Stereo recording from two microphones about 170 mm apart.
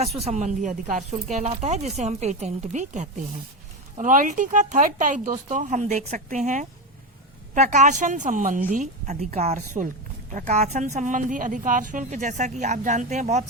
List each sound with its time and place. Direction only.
0.2 s a woman's voice: 40° right (ahead or behind)